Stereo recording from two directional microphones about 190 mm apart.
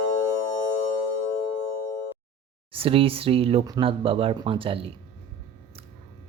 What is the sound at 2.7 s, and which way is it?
Speech, 30° right (ahead or behind).